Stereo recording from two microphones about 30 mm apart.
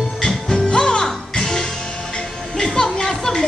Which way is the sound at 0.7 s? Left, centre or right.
Left.